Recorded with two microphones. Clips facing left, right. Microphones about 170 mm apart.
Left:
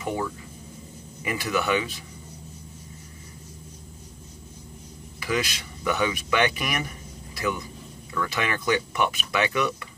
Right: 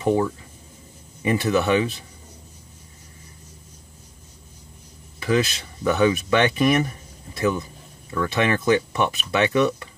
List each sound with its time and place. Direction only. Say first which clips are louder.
0.0 s speech: right 8 dB; 30° right (ahead or behind)
5.2 s speech: right 6 dB; 25° right (ahead or behind)